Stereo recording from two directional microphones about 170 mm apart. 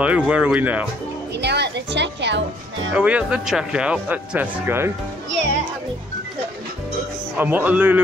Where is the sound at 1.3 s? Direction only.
80° right.